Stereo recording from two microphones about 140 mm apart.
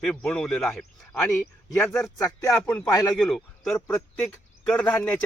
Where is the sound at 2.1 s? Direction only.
25° left (ahead or behind).